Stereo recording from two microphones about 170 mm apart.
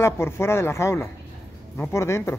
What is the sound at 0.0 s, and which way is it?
A woman's voice, 15° left (ahead or behind).